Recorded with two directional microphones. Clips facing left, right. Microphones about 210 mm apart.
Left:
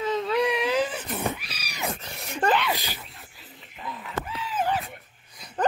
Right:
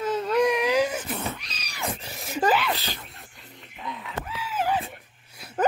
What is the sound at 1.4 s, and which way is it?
Cat, 10° left (ahead or behind).